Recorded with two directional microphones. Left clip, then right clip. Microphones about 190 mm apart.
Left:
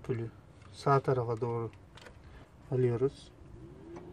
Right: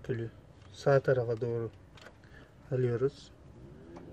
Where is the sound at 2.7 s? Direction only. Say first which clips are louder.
Left 1 dB; 20° left (ahead or behind).